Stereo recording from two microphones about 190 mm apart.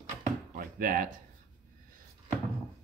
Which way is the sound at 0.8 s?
45° right (ahead or behind).